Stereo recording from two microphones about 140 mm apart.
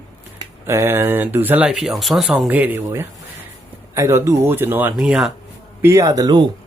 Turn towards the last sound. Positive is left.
turn(degrees=-30)  # may be behind; listen again after turning